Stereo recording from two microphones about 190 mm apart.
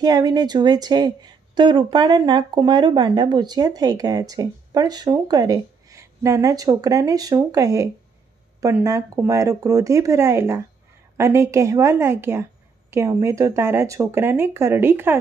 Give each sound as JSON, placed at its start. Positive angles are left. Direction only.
{"t": 0.0, "sound": "speech", "side_deg": -20}